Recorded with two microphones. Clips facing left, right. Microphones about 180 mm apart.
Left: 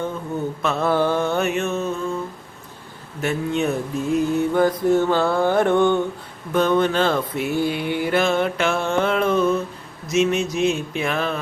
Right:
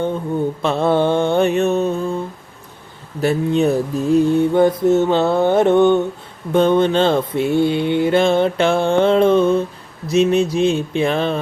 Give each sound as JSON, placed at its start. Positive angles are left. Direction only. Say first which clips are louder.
{"t": 0.6, "sound": "mantra", "louder": "right 3 dB", "side_deg": -30}
{"t": 3.2, "sound": "mantra", "louder": "right 6 dB", "side_deg": -35}